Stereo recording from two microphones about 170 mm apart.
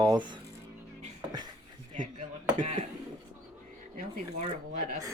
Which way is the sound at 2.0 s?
45° right (ahead or behind).